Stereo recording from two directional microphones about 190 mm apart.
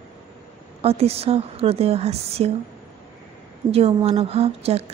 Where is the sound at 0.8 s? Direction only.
30° right (ahead or behind).